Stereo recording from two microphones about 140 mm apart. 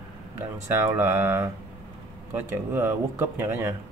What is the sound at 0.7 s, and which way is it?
Speech, 15° right (ahead or behind).